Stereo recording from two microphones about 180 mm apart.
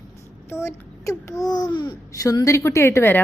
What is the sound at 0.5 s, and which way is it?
Speech, 15° left (ahead or behind).